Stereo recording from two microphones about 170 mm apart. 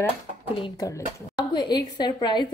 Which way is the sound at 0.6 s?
25° left (ahead or behind).